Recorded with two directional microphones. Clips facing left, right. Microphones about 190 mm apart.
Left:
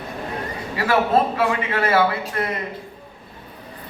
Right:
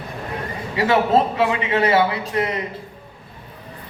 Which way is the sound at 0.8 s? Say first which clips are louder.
Right 2 dB; 20° right (ahead or behind).